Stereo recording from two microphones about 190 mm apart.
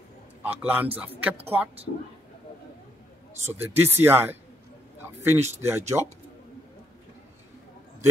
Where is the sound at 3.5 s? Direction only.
10° right (ahead or behind).